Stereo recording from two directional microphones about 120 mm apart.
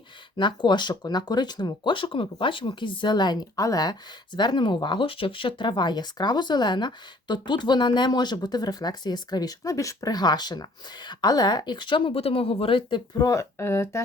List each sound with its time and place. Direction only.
0.3 s speech: 40° left (ahead or behind)
13.1 s speech: 30° left (ahead or behind)